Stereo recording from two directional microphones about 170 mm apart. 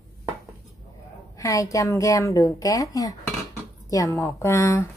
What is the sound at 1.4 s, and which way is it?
A woman's voice, 20° left (ahead or behind).